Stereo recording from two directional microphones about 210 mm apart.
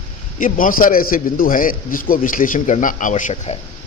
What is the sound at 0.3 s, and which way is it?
Speech, 40° left (ahead or behind).